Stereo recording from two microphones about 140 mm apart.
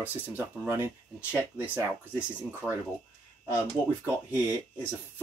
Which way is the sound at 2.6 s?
10° left (ahead or behind).